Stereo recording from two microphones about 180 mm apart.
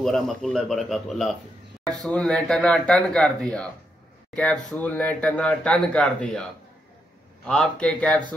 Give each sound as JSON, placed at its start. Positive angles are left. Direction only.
{"t": 0.0, "sound": "speech", "side_deg": 5}
{"t": 7.4, "sound": "speech", "side_deg": 5}